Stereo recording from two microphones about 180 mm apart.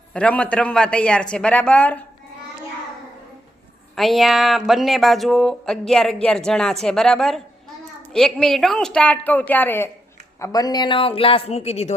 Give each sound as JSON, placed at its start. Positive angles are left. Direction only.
{"t": 0.1, "sound": "a woman's voice", "side_deg": 5}
{"t": 3.9, "sound": "a woman's voice", "side_deg": 0}